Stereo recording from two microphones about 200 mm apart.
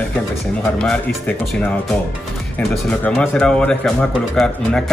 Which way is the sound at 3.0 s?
5° left (ahead or behind).